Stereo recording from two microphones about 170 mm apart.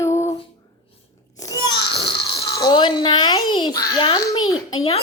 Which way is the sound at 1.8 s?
80° left.